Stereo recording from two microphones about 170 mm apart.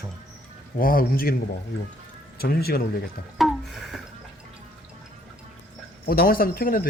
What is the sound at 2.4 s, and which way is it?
Speech, 65° left (ahead or behind).